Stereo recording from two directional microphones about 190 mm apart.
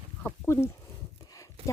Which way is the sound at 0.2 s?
10° left (ahead or behind).